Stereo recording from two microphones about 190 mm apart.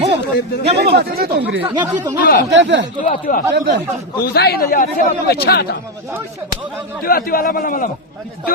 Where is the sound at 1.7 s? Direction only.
20° right (ahead or behind).